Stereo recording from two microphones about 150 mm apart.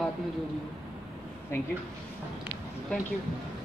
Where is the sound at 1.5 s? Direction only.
15° left (ahead or behind).